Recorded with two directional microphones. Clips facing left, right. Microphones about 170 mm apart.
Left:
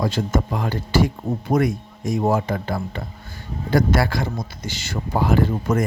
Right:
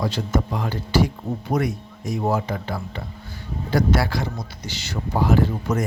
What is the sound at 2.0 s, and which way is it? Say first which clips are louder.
Speech: left 3 dB; 50° left (ahead or behind).